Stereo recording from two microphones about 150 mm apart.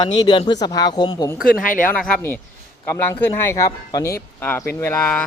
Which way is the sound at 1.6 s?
65° left (ahead or behind).